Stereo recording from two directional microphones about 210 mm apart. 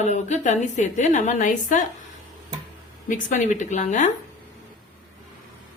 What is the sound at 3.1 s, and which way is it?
A woman's voice, 35° left (ahead or behind).